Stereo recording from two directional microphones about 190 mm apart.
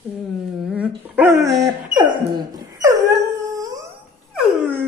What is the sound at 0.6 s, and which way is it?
Speech, 5° right (ahead or behind).